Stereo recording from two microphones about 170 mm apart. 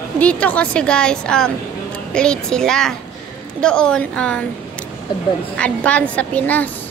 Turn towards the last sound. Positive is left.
turn(degrees=10)  # may be behind; listen again after turning